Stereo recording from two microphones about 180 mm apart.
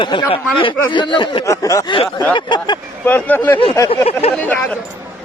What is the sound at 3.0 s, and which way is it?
Speech, 10° left (ahead or behind).